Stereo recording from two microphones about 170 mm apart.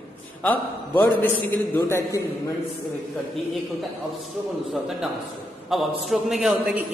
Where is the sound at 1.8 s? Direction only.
20° left (ahead or behind).